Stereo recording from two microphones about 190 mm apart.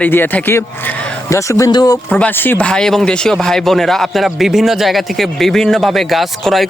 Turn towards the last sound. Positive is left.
turn(degrees=0)  # may be behind; listen again after turning